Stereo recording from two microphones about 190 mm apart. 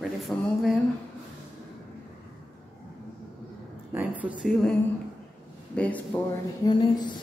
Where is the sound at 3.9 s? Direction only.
10° right (ahead or behind).